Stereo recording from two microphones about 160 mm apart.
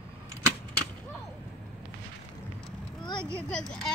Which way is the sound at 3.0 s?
30° left (ahead or behind).